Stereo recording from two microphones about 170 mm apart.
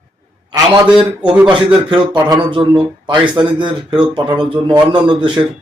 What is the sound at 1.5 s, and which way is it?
Speech, 30° right (ahead or behind).